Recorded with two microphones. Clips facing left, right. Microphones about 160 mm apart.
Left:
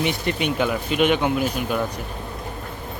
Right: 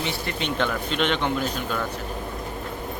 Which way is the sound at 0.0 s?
15° left (ahead or behind).